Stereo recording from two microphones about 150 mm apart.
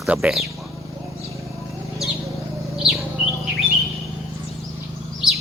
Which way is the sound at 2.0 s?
Centre (ahead or behind).